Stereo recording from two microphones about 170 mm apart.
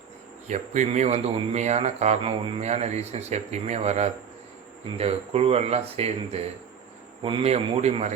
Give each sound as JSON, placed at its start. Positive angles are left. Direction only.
{"t": 0.4, "sound": "speech", "side_deg": -45}